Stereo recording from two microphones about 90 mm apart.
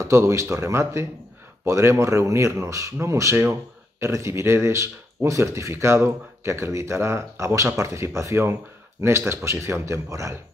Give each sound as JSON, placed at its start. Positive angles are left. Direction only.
{"t": 0.0, "sound": "speech", "side_deg": -30}